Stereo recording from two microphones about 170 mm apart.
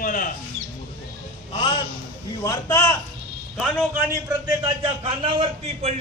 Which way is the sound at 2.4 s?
20° left (ahead or behind).